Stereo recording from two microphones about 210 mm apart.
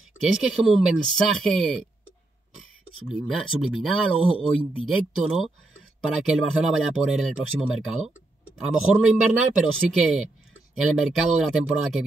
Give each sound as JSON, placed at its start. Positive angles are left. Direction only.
{"t": 0.2, "sound": "speech", "side_deg": 0}
{"t": 3.1, "sound": "speech", "side_deg": 0}
{"t": 4.2, "sound": "speech", "side_deg": 25}
{"t": 4.5, "sound": "speech", "side_deg": 0}